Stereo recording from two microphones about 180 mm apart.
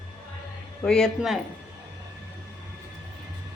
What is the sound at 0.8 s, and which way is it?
Speech, 5° left (ahead or behind).